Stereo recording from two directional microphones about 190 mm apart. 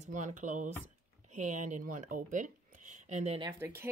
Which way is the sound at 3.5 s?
15° right (ahead or behind).